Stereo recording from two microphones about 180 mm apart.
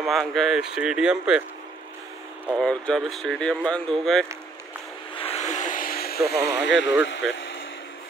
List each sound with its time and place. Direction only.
0.0 s speech: centre (ahead or behind)
2.6 s speech: 5° left (ahead or behind)
5.1 s vehicle: 35° left (ahead or behind); by 6.9 s 75° left (ahead or behind)
7.1 s speech: 90° left